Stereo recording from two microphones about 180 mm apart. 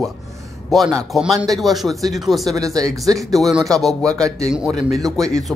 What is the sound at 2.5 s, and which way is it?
Speech, 20° right (ahead or behind).